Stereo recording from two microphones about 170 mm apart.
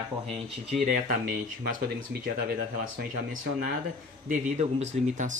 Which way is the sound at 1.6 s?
60° right (ahead or behind).